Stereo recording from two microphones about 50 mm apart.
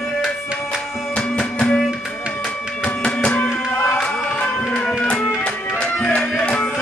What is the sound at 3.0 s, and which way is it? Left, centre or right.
Music, left.